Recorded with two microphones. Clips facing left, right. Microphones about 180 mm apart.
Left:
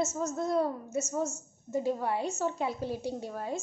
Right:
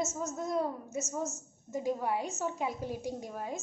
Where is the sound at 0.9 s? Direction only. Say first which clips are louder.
Left 4 dB; 35° left (ahead or behind).